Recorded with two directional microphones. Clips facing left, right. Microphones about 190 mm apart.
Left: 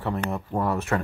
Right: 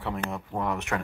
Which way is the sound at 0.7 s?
15° right (ahead or behind).